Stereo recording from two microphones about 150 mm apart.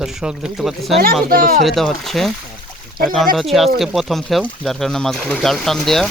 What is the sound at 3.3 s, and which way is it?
Speech, centre (ahead or behind).